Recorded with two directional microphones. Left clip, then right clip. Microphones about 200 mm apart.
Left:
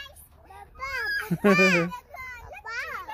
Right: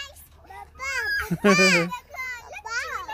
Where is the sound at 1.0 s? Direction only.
Centre (ahead or behind).